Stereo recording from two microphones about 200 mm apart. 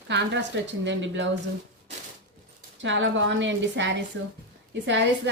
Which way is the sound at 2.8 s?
70° right (ahead or behind).